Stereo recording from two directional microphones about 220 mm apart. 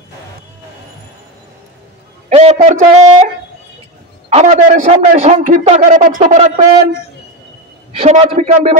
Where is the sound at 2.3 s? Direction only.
30° right (ahead or behind).